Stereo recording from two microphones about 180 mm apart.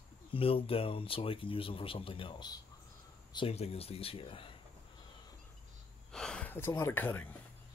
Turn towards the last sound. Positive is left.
turn(degrees=10)  # may be behind; listen again after turning